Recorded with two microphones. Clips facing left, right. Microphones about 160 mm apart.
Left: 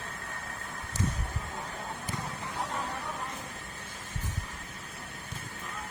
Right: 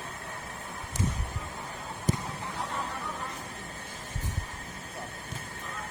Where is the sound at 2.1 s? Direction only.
45° right (ahead or behind).